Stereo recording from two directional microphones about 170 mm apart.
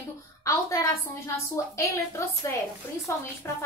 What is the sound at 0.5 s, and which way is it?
A woman's voice, 20° left (ahead or behind).